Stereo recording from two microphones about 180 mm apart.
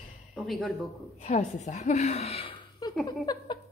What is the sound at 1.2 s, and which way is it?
A woman's voice, 40° left (ahead or behind).